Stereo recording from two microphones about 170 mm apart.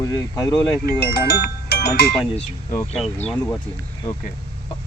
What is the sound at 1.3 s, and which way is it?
Speech, 70° left (ahead or behind).